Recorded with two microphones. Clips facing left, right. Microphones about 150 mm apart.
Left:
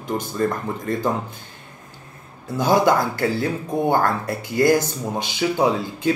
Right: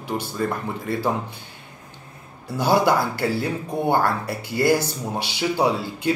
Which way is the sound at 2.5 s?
15° left (ahead or behind).